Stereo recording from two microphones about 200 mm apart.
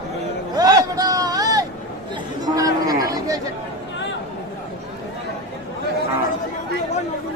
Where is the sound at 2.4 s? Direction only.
20° right (ahead or behind).